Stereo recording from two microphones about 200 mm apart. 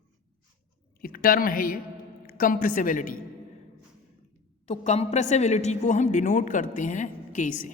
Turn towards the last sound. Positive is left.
turn(degrees=40)  # may be behind; listen again after turning